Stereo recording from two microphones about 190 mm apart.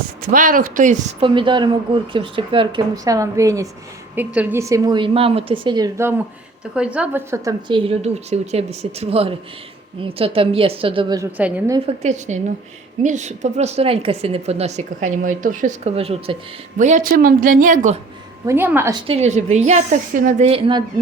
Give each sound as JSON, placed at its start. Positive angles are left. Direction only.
{"t": 0.2, "sound": "a woman's voice", "side_deg": -45}
{"t": 1.2, "sound": "a woman's voice", "side_deg": -25}
{"t": 7.7, "sound": "a woman's voice", "side_deg": -30}
{"t": 11.3, "sound": "a woman's voice", "side_deg": -10}
{"t": 11.9, "sound": "a woman's voice", "side_deg": -40}
{"t": 18.4, "sound": "a woman's voice", "side_deg": -10}
{"t": 18.9, "sound": "a woman's voice", "side_deg": -30}